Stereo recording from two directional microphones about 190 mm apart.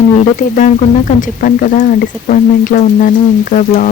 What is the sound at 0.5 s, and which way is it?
Speech, 45° left (ahead or behind).